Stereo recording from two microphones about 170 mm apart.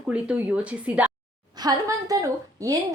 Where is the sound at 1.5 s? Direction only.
25° right (ahead or behind).